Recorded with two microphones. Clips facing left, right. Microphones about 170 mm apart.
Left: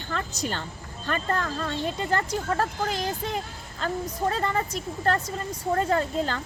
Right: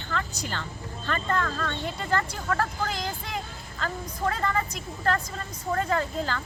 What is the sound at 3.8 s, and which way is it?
A woman's voice, 35° left (ahead or behind).